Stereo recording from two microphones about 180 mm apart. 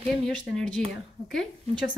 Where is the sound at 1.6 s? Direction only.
25° right (ahead or behind).